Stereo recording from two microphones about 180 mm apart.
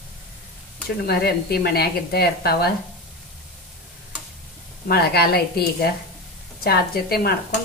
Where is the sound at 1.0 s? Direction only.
60° left (ahead or behind).